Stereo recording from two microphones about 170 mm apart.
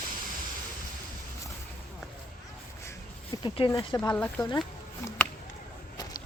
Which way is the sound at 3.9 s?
10° left (ahead or behind).